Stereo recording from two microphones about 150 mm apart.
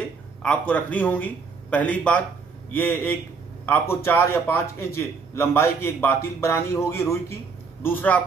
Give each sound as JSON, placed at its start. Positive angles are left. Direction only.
{"t": 0.4, "sound": "a man's voice", "side_deg": 10}